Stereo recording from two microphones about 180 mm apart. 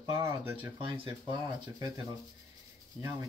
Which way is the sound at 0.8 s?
30° right (ahead or behind).